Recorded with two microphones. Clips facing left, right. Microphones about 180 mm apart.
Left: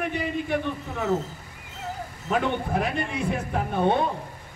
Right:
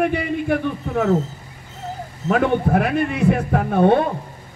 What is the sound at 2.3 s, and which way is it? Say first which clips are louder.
A man's voice: right 8 dB; 65° right (ahead or behind).